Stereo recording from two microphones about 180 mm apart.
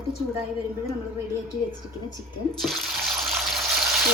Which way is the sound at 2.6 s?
Centre (ahead or behind).